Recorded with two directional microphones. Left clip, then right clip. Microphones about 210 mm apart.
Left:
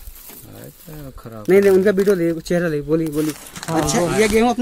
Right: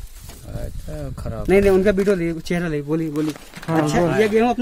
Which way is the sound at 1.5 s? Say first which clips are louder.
Left 2 dB; 10° right (ahead or behind).